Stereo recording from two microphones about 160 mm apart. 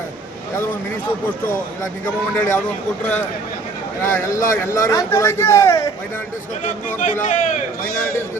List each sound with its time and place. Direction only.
2.3 s a man's voice: 15° left (ahead or behind)
4.0 s speech: 15° left (ahead or behind)
6.8 s a man's voice: 50° left (ahead or behind)